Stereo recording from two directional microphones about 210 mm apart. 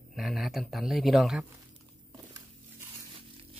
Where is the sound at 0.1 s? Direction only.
Centre (ahead or behind).